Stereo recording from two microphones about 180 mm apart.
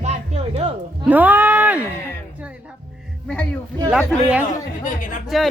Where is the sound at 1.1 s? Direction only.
10° right (ahead or behind).